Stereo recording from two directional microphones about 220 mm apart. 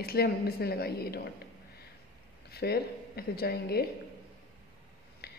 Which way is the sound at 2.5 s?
45° left (ahead or behind).